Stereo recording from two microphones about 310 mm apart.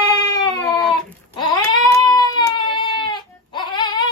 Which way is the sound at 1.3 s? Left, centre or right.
Centre.